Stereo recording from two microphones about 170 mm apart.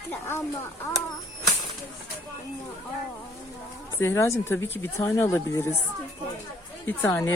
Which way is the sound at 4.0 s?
15° left (ahead or behind).